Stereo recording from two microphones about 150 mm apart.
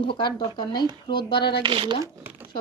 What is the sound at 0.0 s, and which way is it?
Speech, 30° left (ahead or behind).